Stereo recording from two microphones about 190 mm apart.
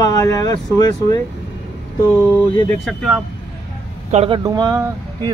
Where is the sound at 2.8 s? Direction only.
Centre (ahead or behind).